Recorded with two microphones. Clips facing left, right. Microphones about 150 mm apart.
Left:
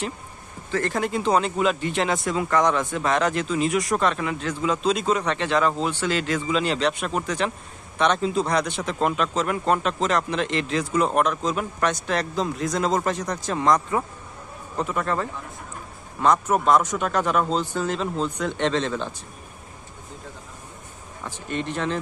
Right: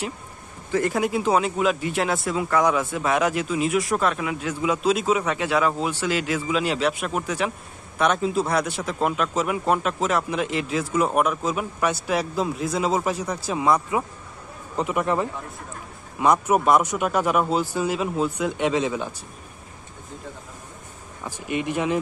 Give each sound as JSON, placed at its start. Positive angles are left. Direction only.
{"t": 0.7, "sound": "speech", "side_deg": -10}
{"t": 21.2, "sound": "speech", "side_deg": -10}